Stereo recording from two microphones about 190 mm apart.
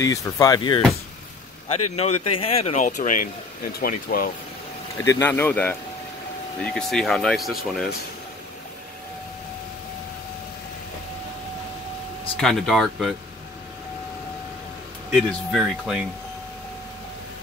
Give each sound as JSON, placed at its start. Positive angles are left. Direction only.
{"t": 0.0, "sound": "speech", "side_deg": 20}
{"t": 1.7, "sound": "speech", "side_deg": 35}
{"t": 4.9, "sound": "a man's voice", "side_deg": 10}
{"t": 12.4, "sound": "speech", "side_deg": 0}
{"t": 15.0, "sound": "speech", "side_deg": -5}